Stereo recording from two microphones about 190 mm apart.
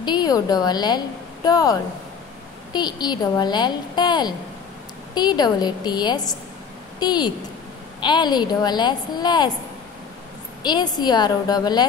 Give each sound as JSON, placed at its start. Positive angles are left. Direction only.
{"t": 0.0, "sound": "a woman's voice", "side_deg": 20}
{"t": 10.6, "sound": "a woman's voice", "side_deg": 20}